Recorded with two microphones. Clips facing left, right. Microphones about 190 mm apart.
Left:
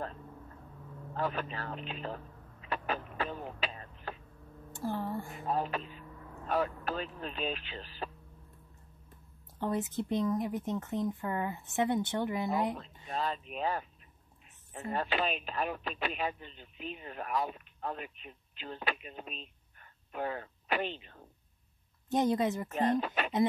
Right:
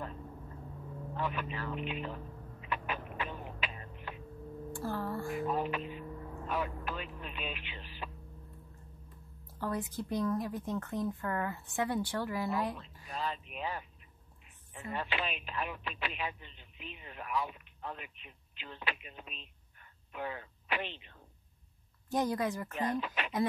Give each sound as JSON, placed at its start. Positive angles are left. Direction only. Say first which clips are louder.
{"t": 1.1, "sound": "speech", "louder": "left 3 dB", "side_deg": 40}
{"t": 2.6, "sound": "a sound", "louder": "left 3 dB", "side_deg": 35}
{"t": 4.7, "sound": "speech", "louder": "left 2 dB", "side_deg": 20}
{"t": 5.5, "sound": "speech", "louder": "even", "side_deg": 35}
{"t": 9.6, "sound": "speech", "louder": "left 3 dB", "side_deg": 20}
{"t": 13.1, "sound": "speech", "louder": "left 3 dB", "side_deg": 40}
{"t": 22.1, "sound": "speech", "louder": "left 3 dB", "side_deg": 20}
{"t": 22.8, "sound": "speech", "louder": "left 6 dB", "side_deg": 45}